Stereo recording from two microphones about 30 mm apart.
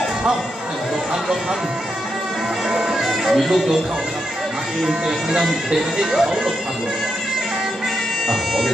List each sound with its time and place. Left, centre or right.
2.7 s music: centre
5.0 s speech: centre